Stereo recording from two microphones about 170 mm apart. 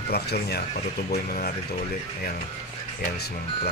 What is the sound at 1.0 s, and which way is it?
Speech, 55° left (ahead or behind).